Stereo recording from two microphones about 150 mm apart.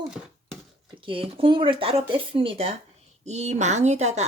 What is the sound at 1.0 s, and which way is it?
A woman's voice, 35° right (ahead or behind).